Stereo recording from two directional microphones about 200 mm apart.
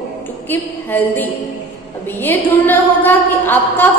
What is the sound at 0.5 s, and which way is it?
Speech, 10° left (ahead or behind).